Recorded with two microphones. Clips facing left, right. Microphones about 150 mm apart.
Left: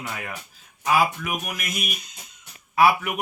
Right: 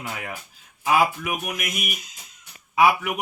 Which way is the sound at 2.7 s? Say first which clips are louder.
Even; 15° right (ahead or behind).